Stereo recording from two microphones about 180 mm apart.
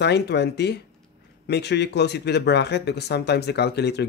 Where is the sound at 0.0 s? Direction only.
65° left (ahead or behind).